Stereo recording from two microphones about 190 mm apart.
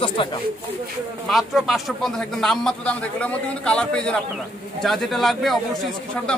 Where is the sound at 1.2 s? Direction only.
Centre (ahead or behind).